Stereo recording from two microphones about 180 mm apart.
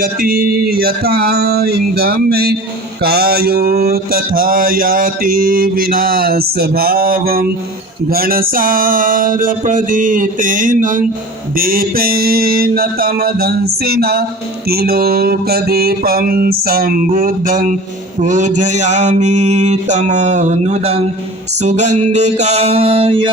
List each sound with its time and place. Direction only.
0.0 s mantra: 50° right (ahead or behind)
8.1 s music: 55° right (ahead or behind)
11.5 s mantra: 55° right (ahead or behind); by 23.3 s 30° right (ahead or behind)